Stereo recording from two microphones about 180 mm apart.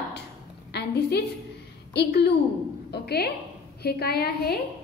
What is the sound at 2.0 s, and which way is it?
A woman's voice, 70° left (ahead or behind).